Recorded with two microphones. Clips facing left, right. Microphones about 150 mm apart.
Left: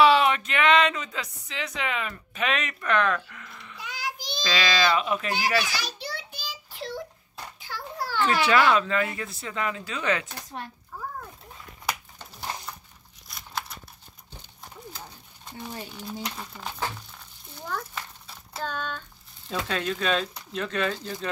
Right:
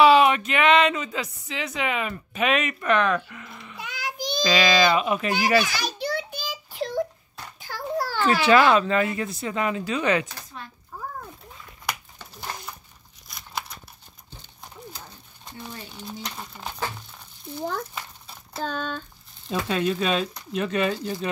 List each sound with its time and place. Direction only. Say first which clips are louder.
0.0 s speech: right 3 dB; 10° right (ahead or behind)
3.7 s child singing: right 1 dB; 60° right (ahead or behind)
4.4 s speech: right 5 dB; 15° right (ahead or behind)
5.6 s a sound: right 5 dB; 50° right (ahead or behind)
6.8 s wail: right 8 dB; 45° right (ahead or behind)
7.6 s a sound: right 7 dB; 40° right (ahead or behind)
8.4 s speech: right 4 dB; 25° right (ahead or behind)
16.3 s speech: right 1 dB; 10° right (ahead or behind)
18.6 s a sound: right 3 dB; 35° right (ahead or behind)
19.5 s speech: right 4 dB; 10° right (ahead or behind)